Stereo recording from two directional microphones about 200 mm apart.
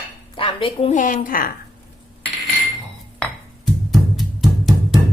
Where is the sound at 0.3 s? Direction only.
25° left (ahead or behind); by 1.5 s 45° left (ahead or behind).